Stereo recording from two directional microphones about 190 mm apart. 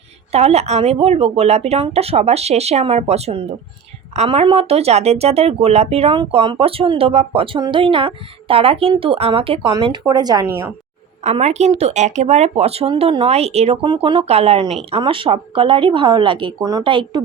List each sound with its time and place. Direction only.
0.3 s speech: 35° right (ahead or behind); by 10.7 s 15° right (ahead or behind)
11.2 s speech: 35° right (ahead or behind)